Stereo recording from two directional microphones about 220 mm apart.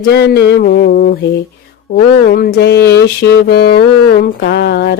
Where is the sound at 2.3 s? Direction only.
45° left (ahead or behind).